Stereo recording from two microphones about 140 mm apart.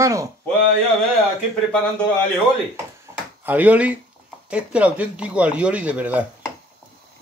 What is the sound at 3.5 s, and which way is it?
Speech, 10° right (ahead or behind).